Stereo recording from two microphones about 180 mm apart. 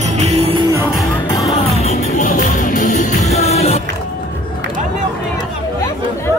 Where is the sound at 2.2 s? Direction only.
45° left (ahead or behind).